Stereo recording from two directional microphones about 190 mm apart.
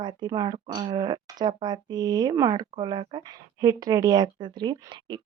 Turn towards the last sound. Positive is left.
turn(degrees=-25)  # may be behind; listen again after turning